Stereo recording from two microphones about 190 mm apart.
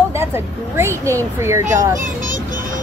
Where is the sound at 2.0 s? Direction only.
45° right (ahead or behind).